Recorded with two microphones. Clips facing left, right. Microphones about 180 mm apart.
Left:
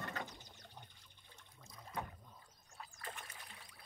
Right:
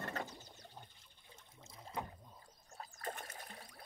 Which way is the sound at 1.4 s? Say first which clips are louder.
Right 1 dB; 25° right (ahead or behind).